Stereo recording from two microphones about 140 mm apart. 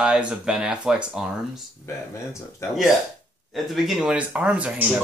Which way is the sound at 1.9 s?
20° left (ahead or behind).